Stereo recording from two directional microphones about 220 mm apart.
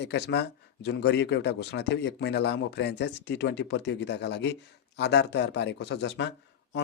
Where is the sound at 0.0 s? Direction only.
50° left (ahead or behind).